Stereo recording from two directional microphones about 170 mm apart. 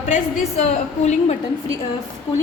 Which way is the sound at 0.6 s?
40° left (ahead or behind).